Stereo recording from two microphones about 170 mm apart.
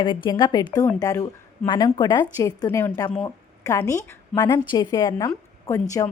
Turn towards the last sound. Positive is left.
turn(degrees=20)  # may be behind; listen again after turning